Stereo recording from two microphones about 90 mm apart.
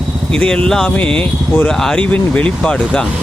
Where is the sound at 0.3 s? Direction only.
10° left (ahead or behind).